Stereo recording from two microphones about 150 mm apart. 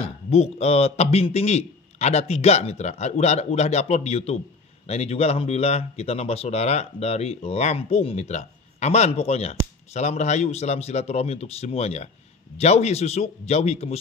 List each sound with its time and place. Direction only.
0.0 s speech: 45° left (ahead or behind)